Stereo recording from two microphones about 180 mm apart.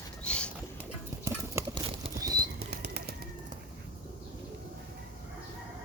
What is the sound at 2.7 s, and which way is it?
Bird, 65° right (ahead or behind).